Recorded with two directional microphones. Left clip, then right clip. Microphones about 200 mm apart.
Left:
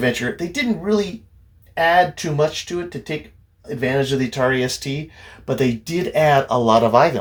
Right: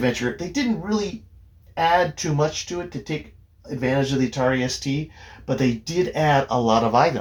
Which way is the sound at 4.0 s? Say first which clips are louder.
Left 4 dB; 45° left (ahead or behind).